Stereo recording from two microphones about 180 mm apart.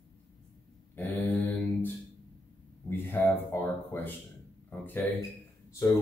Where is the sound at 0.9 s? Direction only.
10° left (ahead or behind).